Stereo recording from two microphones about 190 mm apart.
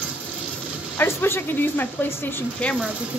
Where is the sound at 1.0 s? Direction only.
10° left (ahead or behind).